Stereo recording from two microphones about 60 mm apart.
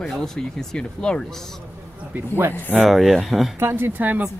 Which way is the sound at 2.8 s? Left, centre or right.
Centre.